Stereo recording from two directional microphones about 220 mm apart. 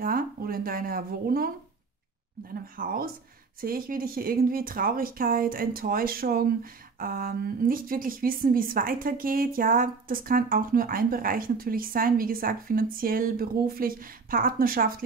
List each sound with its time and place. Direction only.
0.0 s speech: 40° right (ahead or behind)
2.6 s speech: 40° right (ahead or behind)